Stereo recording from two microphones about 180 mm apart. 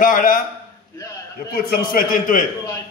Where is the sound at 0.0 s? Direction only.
50° left (ahead or behind).